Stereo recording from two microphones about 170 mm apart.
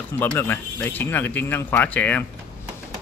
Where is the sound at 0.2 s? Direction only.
10° left (ahead or behind).